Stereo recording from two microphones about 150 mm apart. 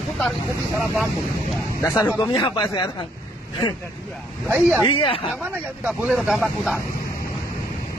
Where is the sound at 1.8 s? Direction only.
20° left (ahead or behind).